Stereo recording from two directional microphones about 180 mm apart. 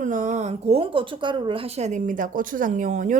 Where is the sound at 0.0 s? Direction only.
45° right (ahead or behind).